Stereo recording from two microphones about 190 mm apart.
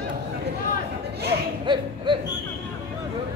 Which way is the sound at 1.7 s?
25° right (ahead or behind).